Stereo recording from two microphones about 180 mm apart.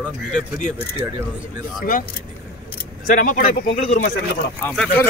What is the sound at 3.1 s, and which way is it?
Speech, 50° left (ahead or behind).